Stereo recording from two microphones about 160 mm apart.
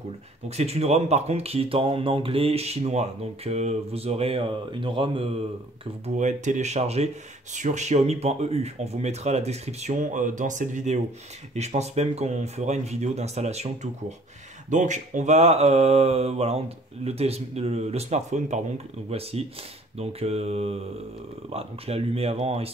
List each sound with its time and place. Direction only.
0.5 s speech: 40° right (ahead or behind)
6.0 s speech: 50° right (ahead or behind)